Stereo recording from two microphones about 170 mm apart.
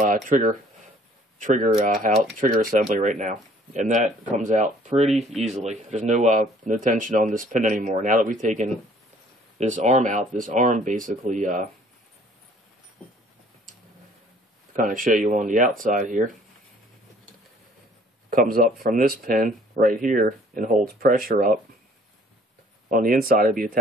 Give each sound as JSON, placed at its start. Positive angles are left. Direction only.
{"t": 0.3, "sound": "speech", "side_deg": -50}
{"t": 5.1, "sound": "speech", "side_deg": 0}
{"t": 5.4, "sound": "speech", "side_deg": -45}
{"t": 14.8, "sound": "speech", "side_deg": -55}
{"t": 18.3, "sound": "speech", "side_deg": -55}
{"t": 22.8, "sound": "speech", "side_deg": -55}